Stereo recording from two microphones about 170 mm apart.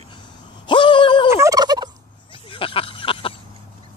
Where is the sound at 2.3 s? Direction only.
30° left (ahead or behind).